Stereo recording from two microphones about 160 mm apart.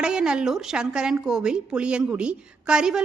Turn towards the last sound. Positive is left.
turn(degrees=-5)  # may be behind; listen again after turning